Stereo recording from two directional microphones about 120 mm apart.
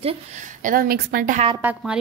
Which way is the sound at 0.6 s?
90° right.